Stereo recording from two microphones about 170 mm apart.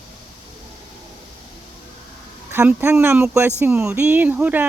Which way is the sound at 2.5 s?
15° right (ahead or behind).